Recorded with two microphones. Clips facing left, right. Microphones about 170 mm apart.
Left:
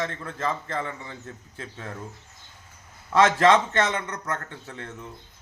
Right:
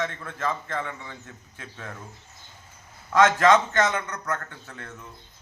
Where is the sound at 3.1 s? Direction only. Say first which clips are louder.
Even; 30° left (ahead or behind).